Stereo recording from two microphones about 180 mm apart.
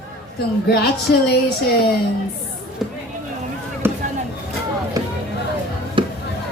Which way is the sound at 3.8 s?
10° right (ahead or behind).